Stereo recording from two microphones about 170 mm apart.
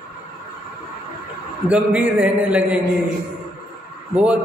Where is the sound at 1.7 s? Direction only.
10° right (ahead or behind).